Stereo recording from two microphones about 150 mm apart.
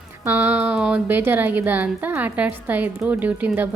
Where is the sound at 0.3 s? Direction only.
15° right (ahead or behind).